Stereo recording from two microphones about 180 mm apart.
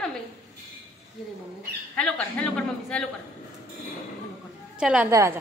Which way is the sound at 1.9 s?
5° left (ahead or behind).